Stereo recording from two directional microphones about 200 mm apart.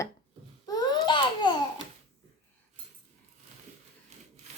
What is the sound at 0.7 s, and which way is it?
Babbling, 20° left (ahead or behind).